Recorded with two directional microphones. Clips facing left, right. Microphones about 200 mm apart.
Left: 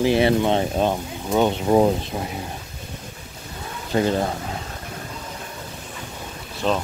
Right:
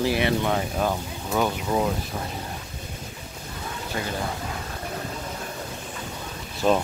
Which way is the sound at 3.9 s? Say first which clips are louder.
Left 11 dB; 30° left (ahead or behind).